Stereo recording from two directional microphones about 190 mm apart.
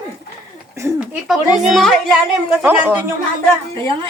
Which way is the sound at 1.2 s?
Centre (ahead or behind).